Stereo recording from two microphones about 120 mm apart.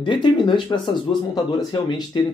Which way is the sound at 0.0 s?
40° left (ahead or behind).